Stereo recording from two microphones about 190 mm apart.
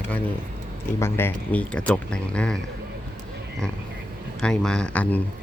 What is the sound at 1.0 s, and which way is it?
Speech, 10° left (ahead or behind).